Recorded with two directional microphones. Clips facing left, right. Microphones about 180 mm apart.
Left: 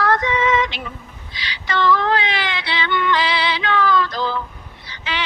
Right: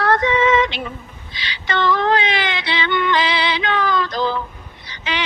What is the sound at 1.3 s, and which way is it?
Female singing, 25° right (ahead or behind).